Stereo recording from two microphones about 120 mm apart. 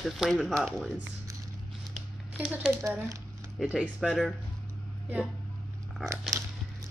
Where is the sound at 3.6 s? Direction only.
5° right (ahead or behind).